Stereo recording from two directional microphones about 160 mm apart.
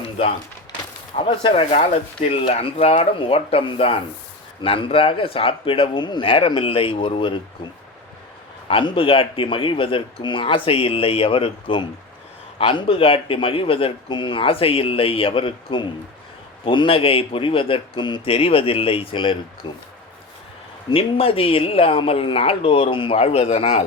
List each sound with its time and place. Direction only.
1.1 s a man's voice: 35° left (ahead or behind)
20.9 s a man's voice: 35° left (ahead or behind)